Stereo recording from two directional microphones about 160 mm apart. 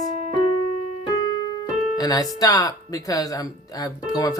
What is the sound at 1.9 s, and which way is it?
Speech, 25° left (ahead or behind).